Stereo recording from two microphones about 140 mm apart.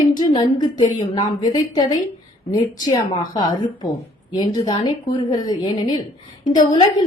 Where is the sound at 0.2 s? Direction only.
30° left (ahead or behind).